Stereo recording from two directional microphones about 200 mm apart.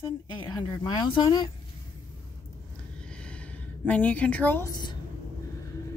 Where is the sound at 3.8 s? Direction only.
5° left (ahead or behind).